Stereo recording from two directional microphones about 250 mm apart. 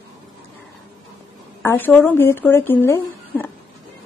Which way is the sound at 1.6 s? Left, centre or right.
Centre.